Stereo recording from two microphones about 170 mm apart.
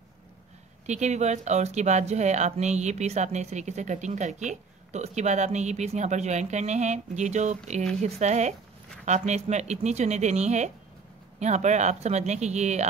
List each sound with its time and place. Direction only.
0.8 s speech: 45° right (ahead or behind)